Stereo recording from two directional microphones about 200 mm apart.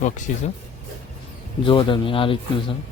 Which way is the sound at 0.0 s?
40° left (ahead or behind).